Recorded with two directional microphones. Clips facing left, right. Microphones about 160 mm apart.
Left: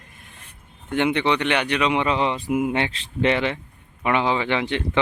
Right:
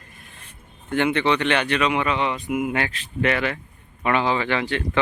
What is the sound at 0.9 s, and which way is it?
Speech, 15° left (ahead or behind).